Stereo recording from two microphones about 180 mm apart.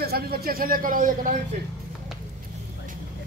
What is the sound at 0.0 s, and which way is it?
A man's voice, 60° right (ahead or behind).